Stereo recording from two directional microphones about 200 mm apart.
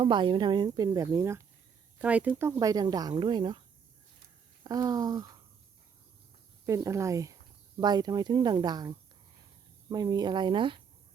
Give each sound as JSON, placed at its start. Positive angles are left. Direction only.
{"t": 0.0, "sound": "speech", "side_deg": -25}
{"t": 4.6, "sound": "speech", "side_deg": -20}
{"t": 6.7, "sound": "speech", "side_deg": -15}